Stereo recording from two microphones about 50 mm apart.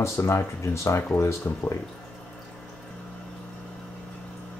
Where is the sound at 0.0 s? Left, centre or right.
Left.